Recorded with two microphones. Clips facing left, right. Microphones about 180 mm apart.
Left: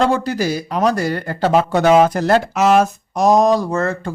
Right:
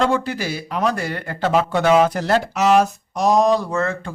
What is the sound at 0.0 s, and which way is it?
A man's voice, 40° left (ahead or behind).